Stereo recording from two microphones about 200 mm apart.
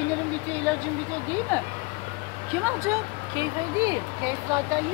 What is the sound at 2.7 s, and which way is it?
Speech, 15° right (ahead or behind).